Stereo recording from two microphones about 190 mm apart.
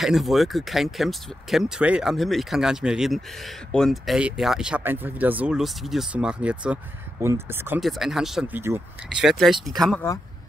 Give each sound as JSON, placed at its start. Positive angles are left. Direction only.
{"t": 0.0, "sound": "speech", "side_deg": 0}